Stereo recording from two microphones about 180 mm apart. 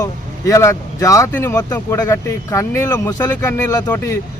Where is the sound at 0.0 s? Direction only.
15° left (ahead or behind).